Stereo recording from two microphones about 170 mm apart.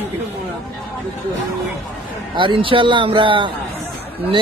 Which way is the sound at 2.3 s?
30° right (ahead or behind).